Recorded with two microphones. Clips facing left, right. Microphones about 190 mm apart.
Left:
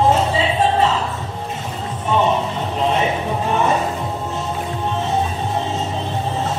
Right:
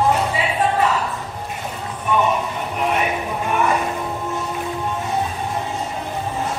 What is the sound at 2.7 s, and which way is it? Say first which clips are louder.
Music: left 2 dB; 25° left (ahead or behind).